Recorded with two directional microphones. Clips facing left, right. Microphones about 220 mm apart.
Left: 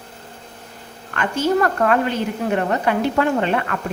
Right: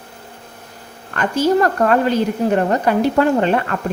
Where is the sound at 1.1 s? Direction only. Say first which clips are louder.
Right 3 dB; 40° right (ahead or behind).